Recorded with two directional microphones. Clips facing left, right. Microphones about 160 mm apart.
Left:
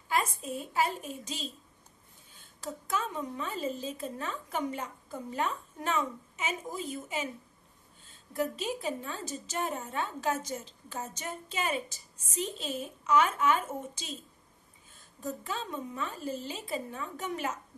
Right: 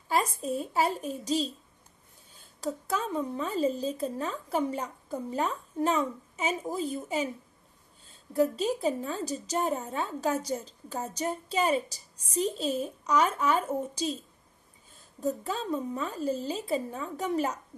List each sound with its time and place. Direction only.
0.1 s a woman's voice: 35° right (ahead or behind)
15.1 s a woman's voice: 35° right (ahead or behind)